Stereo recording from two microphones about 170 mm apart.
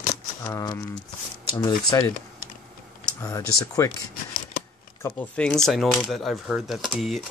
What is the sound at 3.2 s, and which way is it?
Speech, 20° left (ahead or behind).